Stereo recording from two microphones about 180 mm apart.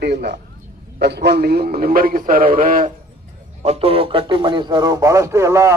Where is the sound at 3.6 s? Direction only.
35° right (ahead or behind); by 5.7 s 15° right (ahead or behind).